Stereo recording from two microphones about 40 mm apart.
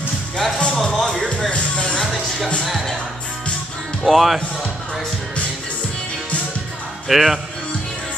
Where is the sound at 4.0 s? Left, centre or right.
Centre.